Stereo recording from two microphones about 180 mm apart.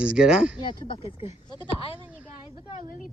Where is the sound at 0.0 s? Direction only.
5° right (ahead or behind).